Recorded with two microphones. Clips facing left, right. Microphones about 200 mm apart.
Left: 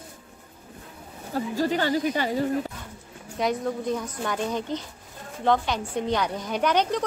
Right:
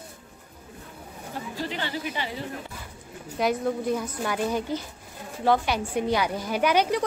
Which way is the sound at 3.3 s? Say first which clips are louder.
Right 1 dB; 5° right (ahead or behind).